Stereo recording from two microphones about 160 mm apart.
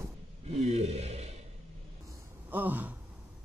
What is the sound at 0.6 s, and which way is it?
Speech, 45° right (ahead or behind).